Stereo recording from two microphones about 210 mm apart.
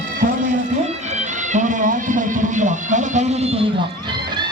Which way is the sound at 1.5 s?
35° right (ahead or behind).